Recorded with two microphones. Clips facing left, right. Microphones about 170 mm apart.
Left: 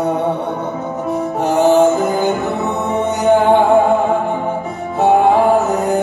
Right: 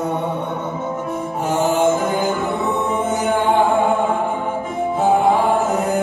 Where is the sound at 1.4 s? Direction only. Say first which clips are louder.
Left 7 dB; 35° left (ahead or behind).